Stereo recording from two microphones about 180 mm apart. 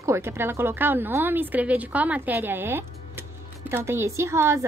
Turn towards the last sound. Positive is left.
turn(degrees=-15)  # may be behind; listen again after turning